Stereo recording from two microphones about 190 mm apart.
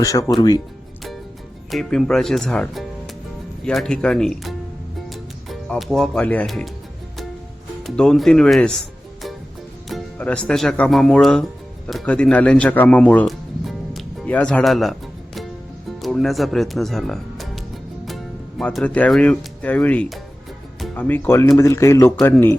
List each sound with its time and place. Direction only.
0.0 s speech: 20° left (ahead or behind)
1.7 s speech: centre (ahead or behind)
5.0 s music: centre (ahead or behind)
7.9 s speech: 5° left (ahead or behind)
9.9 s speech: 5° left (ahead or behind)